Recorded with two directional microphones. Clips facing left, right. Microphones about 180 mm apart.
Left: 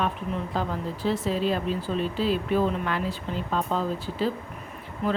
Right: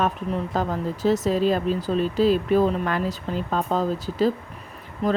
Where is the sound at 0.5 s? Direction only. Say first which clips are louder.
Right 4 dB; 45° right (ahead or behind).